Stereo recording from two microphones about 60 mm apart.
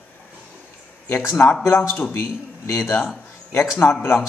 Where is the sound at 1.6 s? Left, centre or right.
Left.